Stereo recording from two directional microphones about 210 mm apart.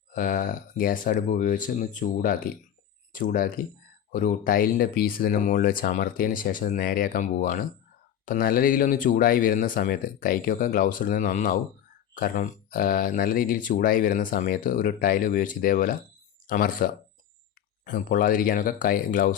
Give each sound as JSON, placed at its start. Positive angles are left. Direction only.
{"t": 0.1, "sound": "speech", "side_deg": 40}